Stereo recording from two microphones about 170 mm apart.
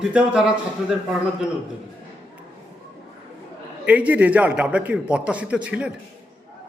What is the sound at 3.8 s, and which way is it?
A man's voice, 10° right (ahead or behind).